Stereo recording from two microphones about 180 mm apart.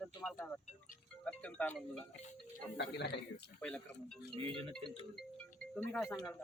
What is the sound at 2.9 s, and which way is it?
Speech, 65° left (ahead or behind).